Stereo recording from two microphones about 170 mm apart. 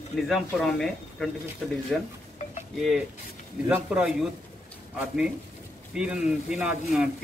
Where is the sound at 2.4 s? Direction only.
45° left (ahead or behind).